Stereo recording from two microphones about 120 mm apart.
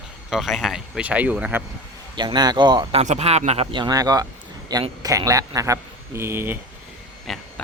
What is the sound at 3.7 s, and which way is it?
Speech, 35° right (ahead or behind).